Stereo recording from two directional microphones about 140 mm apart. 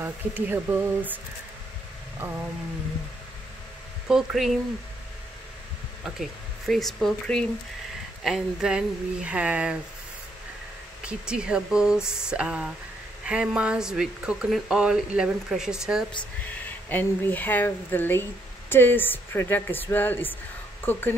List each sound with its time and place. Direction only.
0.0 s speech: 15° right (ahead or behind)
2.2 s speech: 15° right (ahead or behind)
4.1 s speech: 5° right (ahead or behind)
6.7 s speech: centre (ahead or behind)
11.1 s speech: 5° right (ahead or behind)
16.6 s speech: 15° left (ahead or behind)